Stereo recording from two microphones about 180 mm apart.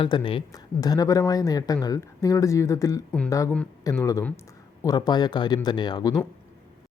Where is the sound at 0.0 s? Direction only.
30° left (ahead or behind).